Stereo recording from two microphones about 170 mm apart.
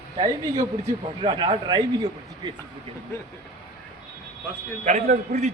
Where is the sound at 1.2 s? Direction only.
30° right (ahead or behind).